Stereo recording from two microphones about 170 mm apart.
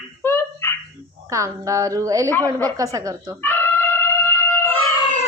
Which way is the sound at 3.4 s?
15° left (ahead or behind).